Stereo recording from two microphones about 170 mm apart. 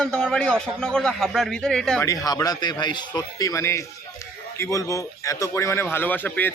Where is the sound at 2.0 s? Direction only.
20° left (ahead or behind).